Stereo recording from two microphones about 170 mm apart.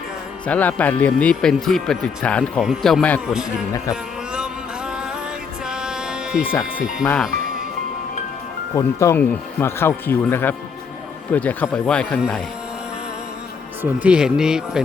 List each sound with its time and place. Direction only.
0.4 s speech: 10° left (ahead or behind)
5.6 s music: 5° right (ahead or behind)
6.5 s speech: 15° left (ahead or behind)
8.7 s speech: 15° left (ahead or behind)
14.0 s speech: 5° right (ahead or behind)